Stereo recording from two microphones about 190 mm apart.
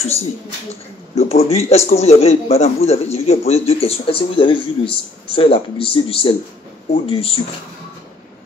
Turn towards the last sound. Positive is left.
turn(degrees=30)  # may be behind; listen again after turning